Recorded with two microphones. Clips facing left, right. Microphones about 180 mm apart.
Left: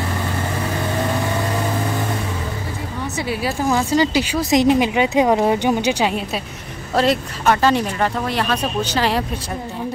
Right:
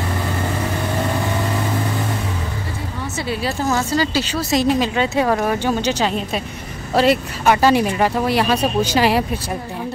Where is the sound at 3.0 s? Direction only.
15° left (ahead or behind); by 9.5 s 10° right (ahead or behind).